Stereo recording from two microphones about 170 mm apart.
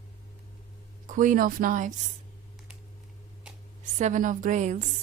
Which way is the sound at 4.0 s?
50° right (ahead or behind).